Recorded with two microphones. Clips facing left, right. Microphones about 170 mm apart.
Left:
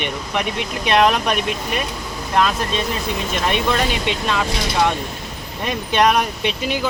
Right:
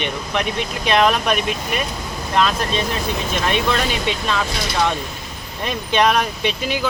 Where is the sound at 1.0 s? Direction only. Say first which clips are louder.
Even; 15° left (ahead or behind).